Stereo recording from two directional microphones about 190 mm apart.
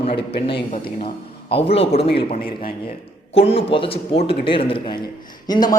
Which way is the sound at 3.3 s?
30° left (ahead or behind).